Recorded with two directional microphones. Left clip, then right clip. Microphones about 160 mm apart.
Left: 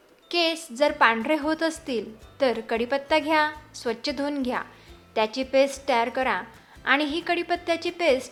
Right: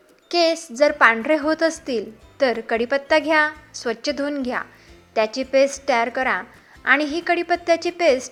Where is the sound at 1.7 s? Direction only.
5° left (ahead or behind).